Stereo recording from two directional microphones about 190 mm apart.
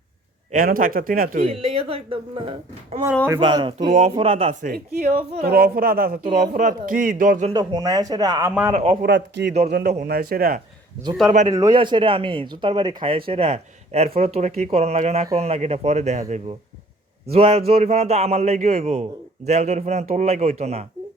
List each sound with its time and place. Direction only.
0.5 s speech: 50° right (ahead or behind)
1.5 s speech: 30° right (ahead or behind)
4.6 s speech: 55° right (ahead or behind)
7.5 s speech: 20° right (ahead or behind)
8.7 s speech: 30° right (ahead or behind)
9.0 s a man's voice: 65° right (ahead or behind)
11.5 s speech: 20° right (ahead or behind)